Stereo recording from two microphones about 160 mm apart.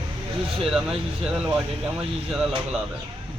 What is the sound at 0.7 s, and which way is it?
Speech, 5° right (ahead or behind).